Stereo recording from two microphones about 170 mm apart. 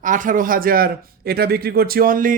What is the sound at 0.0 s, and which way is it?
Speech, 50° right (ahead or behind).